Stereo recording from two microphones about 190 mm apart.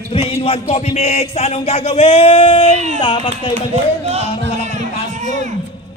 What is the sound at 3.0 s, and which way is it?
Speech, 25° left (ahead or behind).